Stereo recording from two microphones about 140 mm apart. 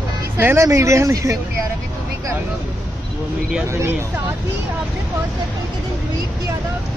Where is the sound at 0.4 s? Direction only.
20° right (ahead or behind).